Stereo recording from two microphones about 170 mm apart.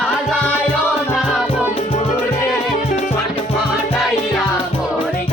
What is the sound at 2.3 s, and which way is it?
Music, 15° left (ahead or behind).